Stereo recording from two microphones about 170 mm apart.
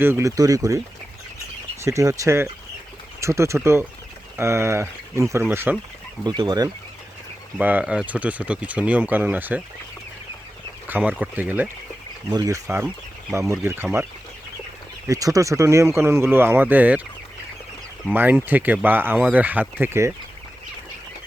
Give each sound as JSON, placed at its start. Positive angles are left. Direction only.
{"t": 0.0, "sound": "speech", "side_deg": -15}
{"t": 1.8, "sound": "speech", "side_deg": -15}
{"t": 6.2, "sound": "speech", "side_deg": -25}
{"t": 7.6, "sound": "speech", "side_deg": -10}
{"t": 10.8, "sound": "speech", "side_deg": -10}
{"t": 12.3, "sound": "speech", "side_deg": -20}
{"t": 15.0, "sound": "speech", "side_deg": -20}
{"t": 18.1, "sound": "speech", "side_deg": -10}